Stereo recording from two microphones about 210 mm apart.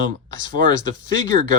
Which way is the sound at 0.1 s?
40° right (ahead or behind).